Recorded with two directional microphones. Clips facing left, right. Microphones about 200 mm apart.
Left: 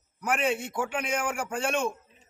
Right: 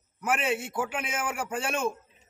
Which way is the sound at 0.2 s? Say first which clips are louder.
Left 1 dB; 5° right (ahead or behind).